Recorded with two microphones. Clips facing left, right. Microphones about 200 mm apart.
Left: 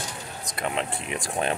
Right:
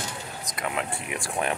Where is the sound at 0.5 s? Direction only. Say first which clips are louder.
Left 2 dB; 30° left (ahead or behind).